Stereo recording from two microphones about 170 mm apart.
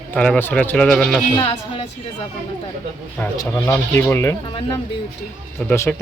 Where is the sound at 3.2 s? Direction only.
15° left (ahead or behind).